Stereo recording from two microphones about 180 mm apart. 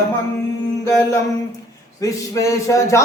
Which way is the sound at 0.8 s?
15° left (ahead or behind).